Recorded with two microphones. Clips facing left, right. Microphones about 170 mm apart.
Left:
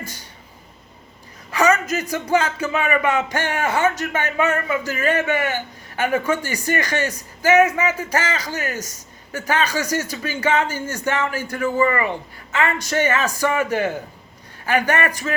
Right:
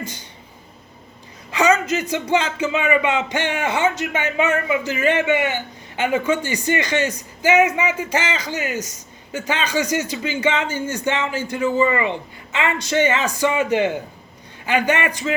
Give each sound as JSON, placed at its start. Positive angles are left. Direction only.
{"t": 0.0, "sound": "speech", "side_deg": -20}
{"t": 1.5, "sound": "a sound", "side_deg": -20}
{"t": 2.3, "sound": "speech", "side_deg": -20}